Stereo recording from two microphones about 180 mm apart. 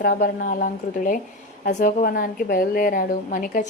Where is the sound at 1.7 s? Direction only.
45° left (ahead or behind).